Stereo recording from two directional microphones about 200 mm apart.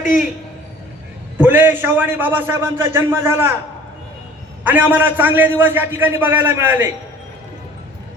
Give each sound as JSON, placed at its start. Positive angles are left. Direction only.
{"t": 1.4, "sound": "a man's voice", "side_deg": -10}
{"t": 4.6, "sound": "a man's voice", "side_deg": -10}